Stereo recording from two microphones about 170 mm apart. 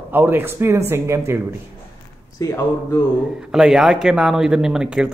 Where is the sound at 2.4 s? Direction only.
20° left (ahead or behind).